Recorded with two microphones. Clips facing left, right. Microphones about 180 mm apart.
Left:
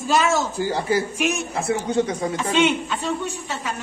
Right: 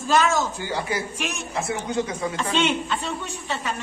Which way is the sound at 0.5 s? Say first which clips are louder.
Left 6 dB; 40° left (ahead or behind).